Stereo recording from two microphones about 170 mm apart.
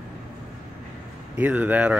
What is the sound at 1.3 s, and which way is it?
Speech, 10° right (ahead or behind).